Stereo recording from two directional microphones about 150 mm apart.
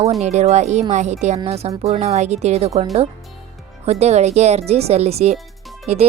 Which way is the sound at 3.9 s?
45° right (ahead or behind).